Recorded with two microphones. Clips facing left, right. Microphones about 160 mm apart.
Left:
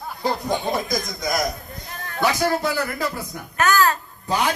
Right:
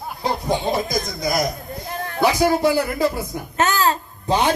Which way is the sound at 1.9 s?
25° right (ahead or behind).